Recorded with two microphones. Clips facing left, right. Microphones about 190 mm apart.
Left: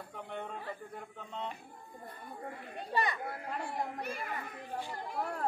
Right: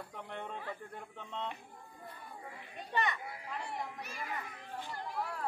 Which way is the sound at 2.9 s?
35° left (ahead or behind).